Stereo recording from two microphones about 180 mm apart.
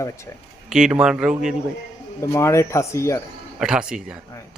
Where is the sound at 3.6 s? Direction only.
5° right (ahead or behind).